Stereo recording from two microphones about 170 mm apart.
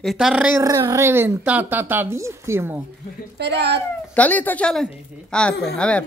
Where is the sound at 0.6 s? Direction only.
20° right (ahead or behind).